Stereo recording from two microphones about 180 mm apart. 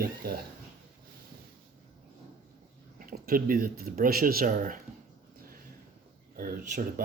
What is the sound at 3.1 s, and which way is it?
Speech, 50° right (ahead or behind).